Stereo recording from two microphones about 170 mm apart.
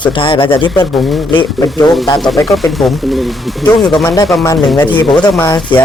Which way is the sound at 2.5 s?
Centre (ahead or behind).